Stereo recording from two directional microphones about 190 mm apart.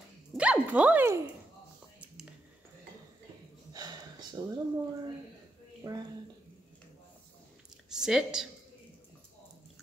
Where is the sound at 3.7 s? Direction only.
20° right (ahead or behind).